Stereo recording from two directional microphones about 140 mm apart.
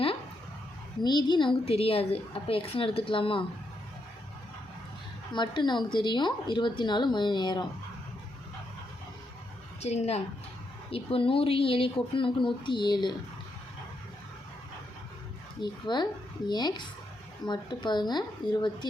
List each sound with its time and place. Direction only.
1.0 s a woman's voice: 30° left (ahead or behind)
5.3 s a woman's voice: 35° left (ahead or behind)
9.8 s a woman's voice: 50° left (ahead or behind); by 13.1 s 35° left (ahead or behind)
15.6 s a woman's voice: 30° left (ahead or behind)